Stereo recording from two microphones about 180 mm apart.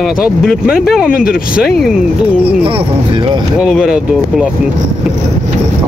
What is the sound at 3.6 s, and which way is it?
Speech, centre (ahead or behind).